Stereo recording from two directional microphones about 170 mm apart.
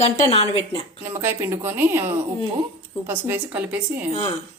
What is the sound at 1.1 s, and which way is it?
Speech, 15° right (ahead or behind).